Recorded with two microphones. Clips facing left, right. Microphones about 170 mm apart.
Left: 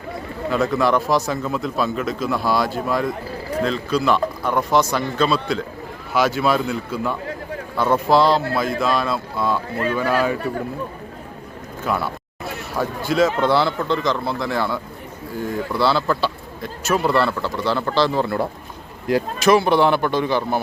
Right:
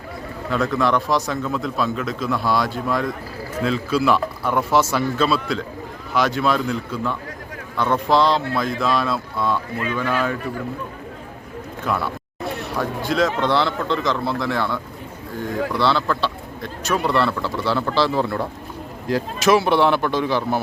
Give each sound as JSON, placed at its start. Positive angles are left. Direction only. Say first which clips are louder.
{"t": 0.5, "sound": "a man's voice", "louder": "left 1 dB", "side_deg": 5}
{"t": 9.7, "sound": "speech", "louder": "left 3 dB", "side_deg": 40}
{"t": 11.9, "sound": "speech", "louder": "left 1 dB", "side_deg": 0}
{"t": 19.4, "sound": "speech", "louder": "even", "side_deg": 0}